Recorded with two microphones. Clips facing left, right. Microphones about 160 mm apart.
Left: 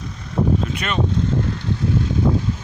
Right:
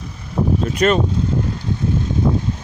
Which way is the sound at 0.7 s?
40° right (ahead or behind).